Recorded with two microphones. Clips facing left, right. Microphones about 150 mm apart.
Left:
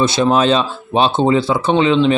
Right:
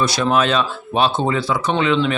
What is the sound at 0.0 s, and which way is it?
Speech, 25° left (ahead or behind).